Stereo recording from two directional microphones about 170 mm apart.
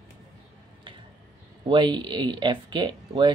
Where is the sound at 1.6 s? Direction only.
30° right (ahead or behind).